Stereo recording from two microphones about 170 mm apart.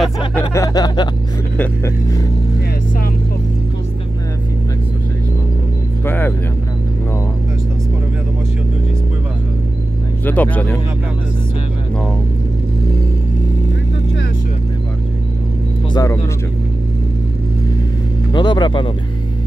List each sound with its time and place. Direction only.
0.4 s a sound: 20° left (ahead or behind)
6.0 s speech: 10° left (ahead or behind)
10.2 s speech: 10° left (ahead or behind)
15.9 s speech: 20° left (ahead or behind)
18.3 s speech: 25° left (ahead or behind)